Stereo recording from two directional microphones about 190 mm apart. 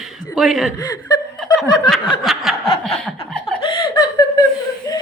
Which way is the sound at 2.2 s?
Centre (ahead or behind).